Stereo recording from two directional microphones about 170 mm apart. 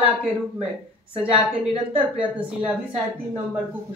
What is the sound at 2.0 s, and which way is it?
Speech, 5° right (ahead or behind).